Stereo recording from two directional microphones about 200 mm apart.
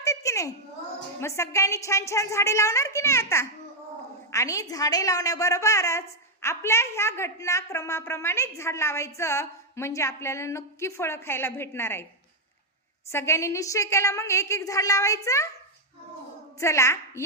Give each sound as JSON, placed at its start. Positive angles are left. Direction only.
{"t": 0.0, "sound": "a woman's voice", "side_deg": 15}
{"t": 13.1, "sound": "a woman's voice", "side_deg": 15}
{"t": 16.6, "sound": "a woman's voice", "side_deg": 15}